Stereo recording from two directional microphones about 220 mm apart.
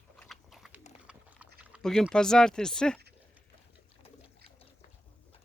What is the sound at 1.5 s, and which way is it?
Speech, 5° right (ahead or behind).